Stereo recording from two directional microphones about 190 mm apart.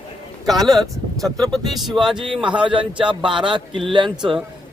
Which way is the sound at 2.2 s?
25° right (ahead or behind).